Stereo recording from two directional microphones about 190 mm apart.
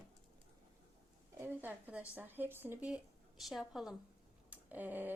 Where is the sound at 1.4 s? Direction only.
10° right (ahead or behind).